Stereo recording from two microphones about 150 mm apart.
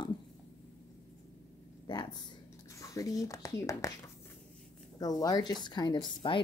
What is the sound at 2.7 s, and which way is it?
Speech, 20° left (ahead or behind).